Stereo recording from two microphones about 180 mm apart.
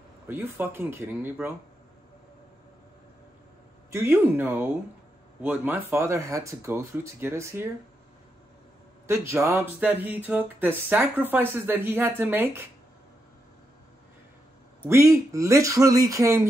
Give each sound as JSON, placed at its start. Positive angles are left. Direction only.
{"t": 0.3, "sound": "speech", "side_deg": -10}
{"t": 3.9, "sound": "speech", "side_deg": -15}
{"t": 9.0, "sound": "speech", "side_deg": -15}
{"t": 14.8, "sound": "speech", "side_deg": -15}